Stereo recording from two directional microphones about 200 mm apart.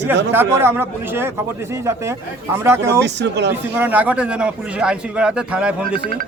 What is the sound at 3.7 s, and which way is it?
A man's voice, 10° right (ahead or behind).